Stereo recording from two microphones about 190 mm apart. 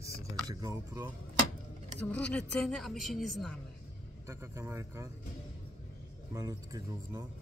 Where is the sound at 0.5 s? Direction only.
20° right (ahead or behind).